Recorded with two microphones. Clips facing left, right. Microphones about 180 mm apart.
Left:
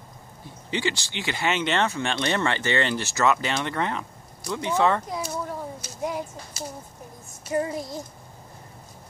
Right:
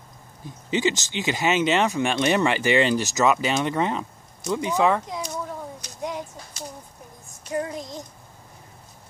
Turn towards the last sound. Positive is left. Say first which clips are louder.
# left 2 dB
turn(degrees=5)  # may be behind; listen again after turning